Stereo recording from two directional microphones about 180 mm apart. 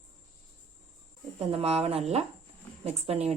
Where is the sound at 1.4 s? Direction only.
35° right (ahead or behind).